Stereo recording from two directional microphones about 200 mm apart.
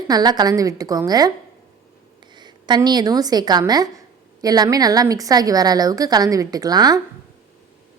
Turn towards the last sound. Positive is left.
turn(degrees=-20)  # may be behind; listen again after turning